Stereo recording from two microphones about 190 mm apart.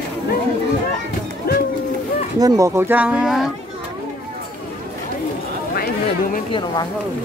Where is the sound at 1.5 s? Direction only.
55° left (ahead or behind).